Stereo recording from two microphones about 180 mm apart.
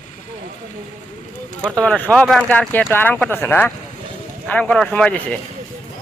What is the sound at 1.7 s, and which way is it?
Speech, 5° left (ahead or behind).